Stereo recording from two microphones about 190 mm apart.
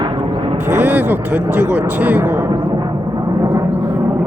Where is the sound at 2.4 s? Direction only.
25° right (ahead or behind).